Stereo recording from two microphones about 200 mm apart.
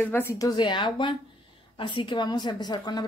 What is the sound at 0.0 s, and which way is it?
A woman's voice, 10° left (ahead or behind).